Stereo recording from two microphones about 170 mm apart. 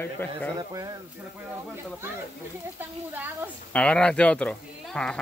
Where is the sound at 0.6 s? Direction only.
20° right (ahead or behind).